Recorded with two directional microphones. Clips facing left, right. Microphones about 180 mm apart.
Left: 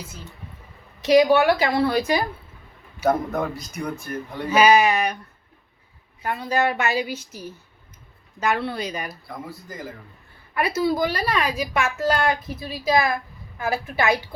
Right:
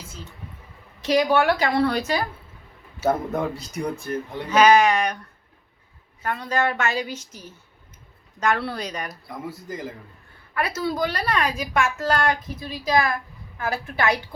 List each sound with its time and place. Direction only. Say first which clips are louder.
1.0 s a woman's voice: left 4 dB; 10° left (ahead or behind)
3.4 s speech: right 1 dB; 30° right (ahead or behind)
4.4 s a woman's voice: even; 10° left (ahead or behind)
6.2 s a woman's voice: left 1 dB; 10° left (ahead or behind)
9.5 s speech: right 3 dB; 25° right (ahead or behind)
10.5 s a woman's voice: left 4 dB; 10° left (ahead or behind)